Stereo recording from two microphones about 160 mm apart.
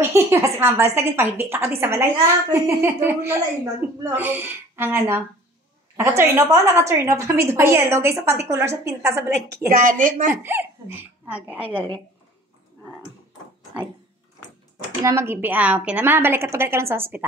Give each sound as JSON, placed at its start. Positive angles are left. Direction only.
{"t": 0.0, "sound": "a woman's voice", "side_deg": -15}
{"t": 9.7, "sound": "a woman's voice", "side_deg": -55}
{"t": 10.3, "sound": "a woman's voice", "side_deg": -15}
{"t": 15.0, "sound": "a woman's voice", "side_deg": -15}